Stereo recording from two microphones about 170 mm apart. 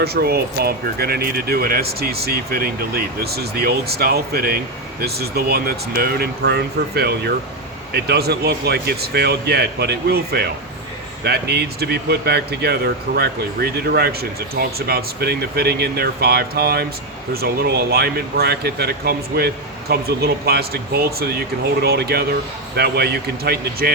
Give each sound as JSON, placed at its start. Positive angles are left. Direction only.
{"t": 0.0, "sound": "speech", "side_deg": -65}